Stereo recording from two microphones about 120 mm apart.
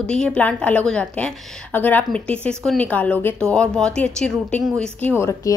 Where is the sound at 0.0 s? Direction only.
5° left (ahead or behind).